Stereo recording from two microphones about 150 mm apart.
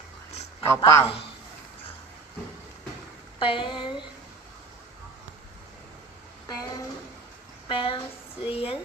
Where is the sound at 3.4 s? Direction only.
35° left (ahead or behind).